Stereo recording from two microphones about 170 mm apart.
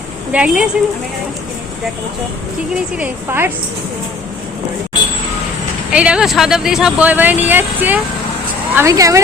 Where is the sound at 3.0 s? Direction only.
15° right (ahead or behind).